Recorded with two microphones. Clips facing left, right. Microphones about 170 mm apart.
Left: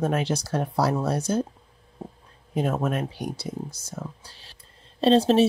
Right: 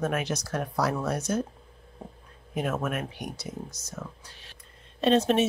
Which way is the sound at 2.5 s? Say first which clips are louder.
Left 4 dB; 30° left (ahead or behind).